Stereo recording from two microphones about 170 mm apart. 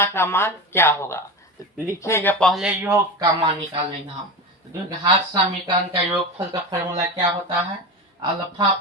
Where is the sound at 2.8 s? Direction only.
15° right (ahead or behind).